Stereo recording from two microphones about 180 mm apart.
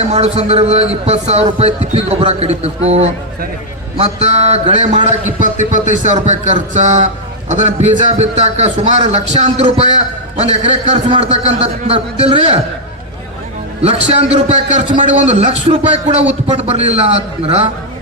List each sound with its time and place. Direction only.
0.1 s a man's voice: 35° right (ahead or behind)
13.8 s a man's voice: 35° right (ahead or behind)